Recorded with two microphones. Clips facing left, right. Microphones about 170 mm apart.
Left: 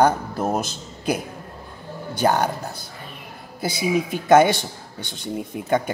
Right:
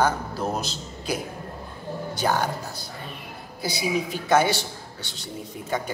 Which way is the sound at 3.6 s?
55° left (ahead or behind).